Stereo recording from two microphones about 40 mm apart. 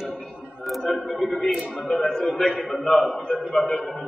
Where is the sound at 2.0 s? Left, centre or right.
Left.